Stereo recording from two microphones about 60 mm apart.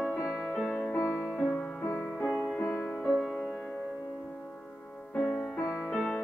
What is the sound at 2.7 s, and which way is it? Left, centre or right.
Music, left.